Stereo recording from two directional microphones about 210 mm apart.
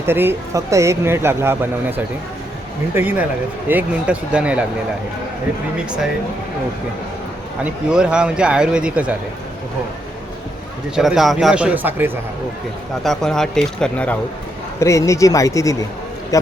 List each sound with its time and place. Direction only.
0.0 s speech: 10° right (ahead or behind)
7.6 s speech: 5° right (ahead or behind)
10.9 s speech: centre (ahead or behind)
13.0 s a man's voice: centre (ahead or behind)